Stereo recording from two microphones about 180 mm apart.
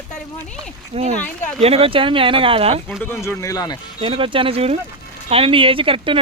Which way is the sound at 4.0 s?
30° right (ahead or behind).